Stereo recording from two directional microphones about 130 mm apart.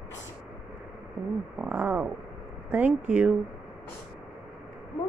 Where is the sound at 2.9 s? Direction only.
65° right (ahead or behind).